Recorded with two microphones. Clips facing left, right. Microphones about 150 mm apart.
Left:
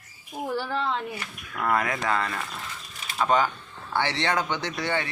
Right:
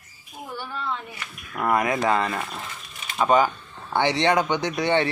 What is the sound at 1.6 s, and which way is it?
Speech, 15° right (ahead or behind).